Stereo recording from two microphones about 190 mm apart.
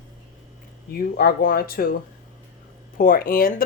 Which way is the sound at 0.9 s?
55° left (ahead or behind).